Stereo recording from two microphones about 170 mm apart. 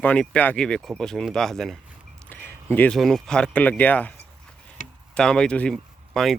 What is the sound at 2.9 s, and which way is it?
Speech, centre (ahead or behind).